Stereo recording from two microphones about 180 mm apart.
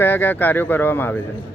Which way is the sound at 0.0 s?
10° left (ahead or behind).